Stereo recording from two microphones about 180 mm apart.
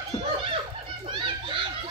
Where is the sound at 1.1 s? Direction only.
25° right (ahead or behind).